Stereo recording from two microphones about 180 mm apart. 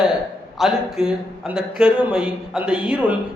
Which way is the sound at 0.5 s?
Centre (ahead or behind).